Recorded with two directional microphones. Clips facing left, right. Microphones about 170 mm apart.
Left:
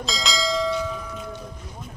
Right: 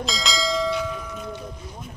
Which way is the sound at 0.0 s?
Centre (ahead or behind).